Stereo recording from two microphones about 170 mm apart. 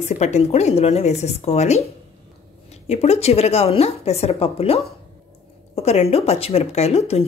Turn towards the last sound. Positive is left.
turn(degrees=40)  # may be behind; listen again after turning